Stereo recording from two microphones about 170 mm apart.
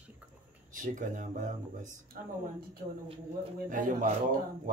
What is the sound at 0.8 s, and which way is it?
A man's voice, 50° right (ahead or behind).